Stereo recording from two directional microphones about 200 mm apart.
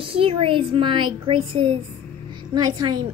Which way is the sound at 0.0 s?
25° right (ahead or behind).